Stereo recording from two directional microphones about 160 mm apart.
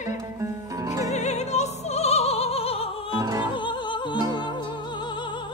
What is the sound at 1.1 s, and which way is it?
Opera, 45° left (ahead or behind).